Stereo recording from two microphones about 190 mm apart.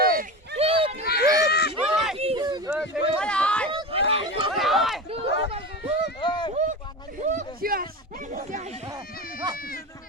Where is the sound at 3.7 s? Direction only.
30° right (ahead or behind).